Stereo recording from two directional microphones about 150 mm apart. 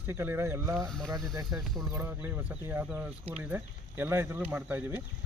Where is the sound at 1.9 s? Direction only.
15° right (ahead or behind).